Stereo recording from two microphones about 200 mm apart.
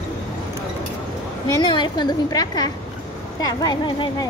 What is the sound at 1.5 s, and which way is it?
A woman's voice, 20° left (ahead or behind).